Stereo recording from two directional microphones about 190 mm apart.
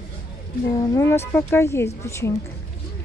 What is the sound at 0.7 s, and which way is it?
A woman's voice, 20° left (ahead or behind).